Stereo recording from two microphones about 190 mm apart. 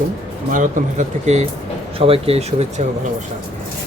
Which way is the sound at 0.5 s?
40° right (ahead or behind).